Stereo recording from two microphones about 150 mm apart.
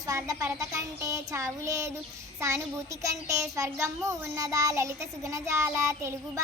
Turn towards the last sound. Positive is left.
turn(degrees=-20)  # may be behind; listen again after turning